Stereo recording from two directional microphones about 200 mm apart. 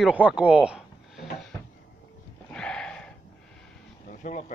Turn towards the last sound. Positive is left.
turn(degrees=40)  # may be behind; listen again after turning